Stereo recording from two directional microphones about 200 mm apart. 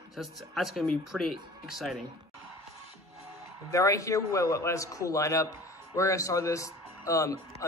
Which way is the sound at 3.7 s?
15° left (ahead or behind).